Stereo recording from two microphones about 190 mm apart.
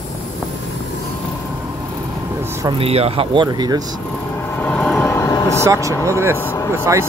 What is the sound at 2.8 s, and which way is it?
Speech, 30° right (ahead or behind).